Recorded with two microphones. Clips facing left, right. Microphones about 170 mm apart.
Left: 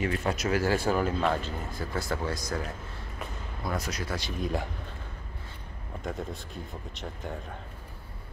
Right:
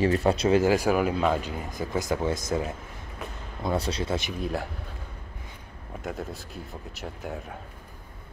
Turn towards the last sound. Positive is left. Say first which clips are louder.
# right 2 dB
turn(degrees=-5)  # may be behind; listen again after turning